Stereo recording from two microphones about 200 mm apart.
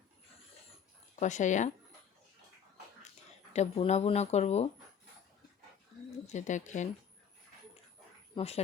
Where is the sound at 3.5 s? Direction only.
35° left (ahead or behind).